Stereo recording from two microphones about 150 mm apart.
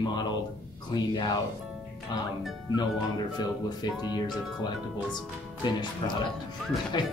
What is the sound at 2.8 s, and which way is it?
Speech, 30° left (ahead or behind).